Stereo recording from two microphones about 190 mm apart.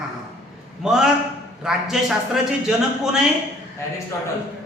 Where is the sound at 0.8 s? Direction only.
5° right (ahead or behind).